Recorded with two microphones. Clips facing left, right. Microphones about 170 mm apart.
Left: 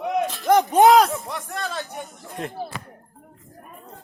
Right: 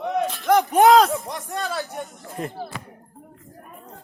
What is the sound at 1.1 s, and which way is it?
Speech, 15° right (ahead or behind).